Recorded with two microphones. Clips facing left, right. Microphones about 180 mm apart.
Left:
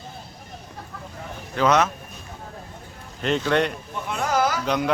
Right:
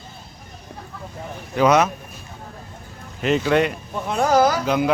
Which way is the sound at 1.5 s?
10° right (ahead or behind).